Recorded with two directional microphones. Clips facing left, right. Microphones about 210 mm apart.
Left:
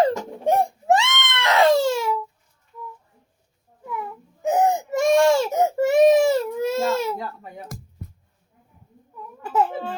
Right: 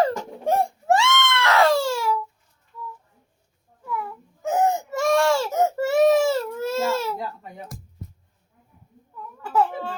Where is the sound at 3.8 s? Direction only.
20° left (ahead or behind).